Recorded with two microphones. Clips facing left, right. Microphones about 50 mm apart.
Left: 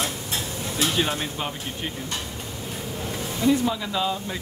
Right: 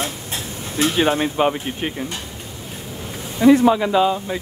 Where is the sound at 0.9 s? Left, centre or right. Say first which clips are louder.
Right 8 dB; right.